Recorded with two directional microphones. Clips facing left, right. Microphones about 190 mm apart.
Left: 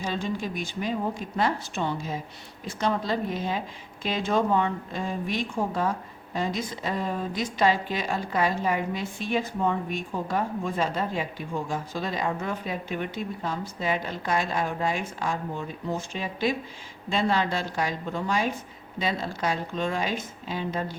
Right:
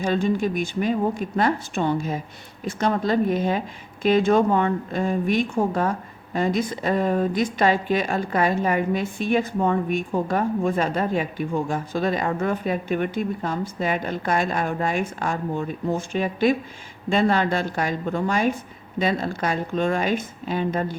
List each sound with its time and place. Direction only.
0.0 s a woman's voice: 55° right (ahead or behind)